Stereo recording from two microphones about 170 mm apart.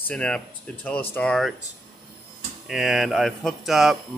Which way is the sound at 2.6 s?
Centre (ahead or behind).